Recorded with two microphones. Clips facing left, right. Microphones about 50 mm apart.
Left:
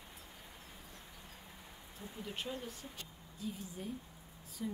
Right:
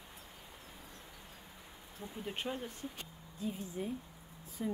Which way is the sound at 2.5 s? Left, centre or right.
Right.